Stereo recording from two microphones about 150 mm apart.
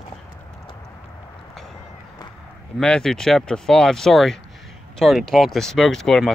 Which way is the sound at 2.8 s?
5° left (ahead or behind).